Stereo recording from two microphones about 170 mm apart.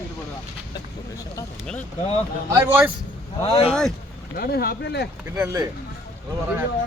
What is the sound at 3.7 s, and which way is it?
Speech, centre (ahead or behind).